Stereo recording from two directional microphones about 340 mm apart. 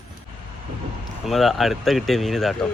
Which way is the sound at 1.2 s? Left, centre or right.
Centre.